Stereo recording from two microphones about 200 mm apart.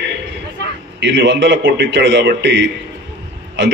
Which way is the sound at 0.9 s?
60° right (ahead or behind).